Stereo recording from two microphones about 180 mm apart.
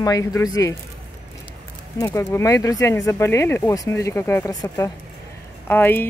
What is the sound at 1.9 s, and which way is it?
Speech, 15° left (ahead or behind).